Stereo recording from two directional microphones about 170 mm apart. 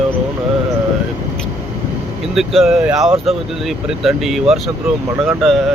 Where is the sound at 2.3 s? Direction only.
Centre (ahead or behind).